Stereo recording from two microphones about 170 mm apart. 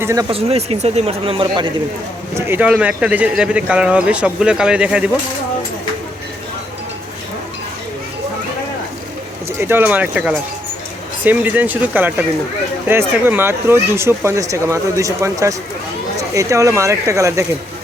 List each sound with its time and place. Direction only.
0.0 s speech: 15° right (ahead or behind)
0.3 s speech: 35° right (ahead or behind)
2.3 s speech: 10° right (ahead or behind)
9.6 s speech: 10° right (ahead or behind)